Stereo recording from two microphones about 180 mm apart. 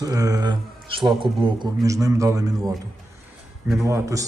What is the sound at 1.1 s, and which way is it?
Speech, centre (ahead or behind).